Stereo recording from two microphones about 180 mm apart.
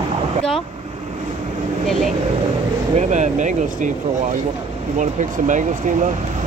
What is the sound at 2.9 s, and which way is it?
Speech, 40° right (ahead or behind).